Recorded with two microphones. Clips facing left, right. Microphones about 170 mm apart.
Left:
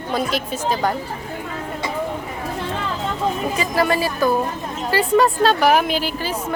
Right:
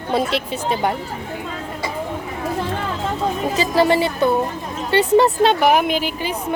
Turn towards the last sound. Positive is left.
turn(degrees=-20)  # may be behind; listen again after turning